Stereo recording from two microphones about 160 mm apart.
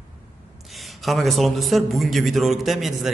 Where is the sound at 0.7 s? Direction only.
Centre (ahead or behind).